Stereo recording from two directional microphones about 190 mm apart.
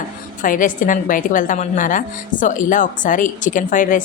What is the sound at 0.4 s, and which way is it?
A woman's voice, 45° left (ahead or behind).